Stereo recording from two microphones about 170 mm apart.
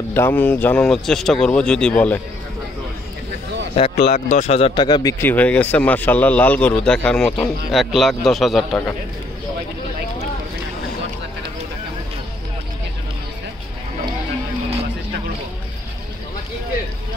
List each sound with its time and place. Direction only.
0.1 s speech: 10° left (ahead or behind)
3.7 s speech: 40° left (ahead or behind)
5.2 s speech: 10° left (ahead or behind)